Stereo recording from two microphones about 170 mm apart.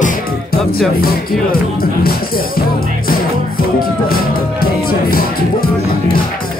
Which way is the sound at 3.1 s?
60° left (ahead or behind).